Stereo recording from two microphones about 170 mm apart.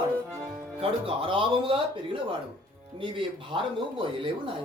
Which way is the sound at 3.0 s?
30° right (ahead or behind).